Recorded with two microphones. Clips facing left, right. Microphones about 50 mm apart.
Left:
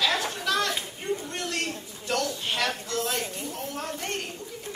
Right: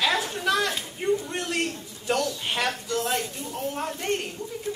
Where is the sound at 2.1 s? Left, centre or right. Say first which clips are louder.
Right 2 dB; centre.